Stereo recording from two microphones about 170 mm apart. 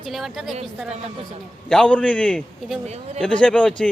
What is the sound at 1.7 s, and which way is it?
A man's voice, 5° left (ahead or behind).